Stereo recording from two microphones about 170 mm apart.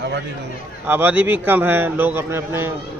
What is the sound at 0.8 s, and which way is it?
Speech, 10° right (ahead or behind).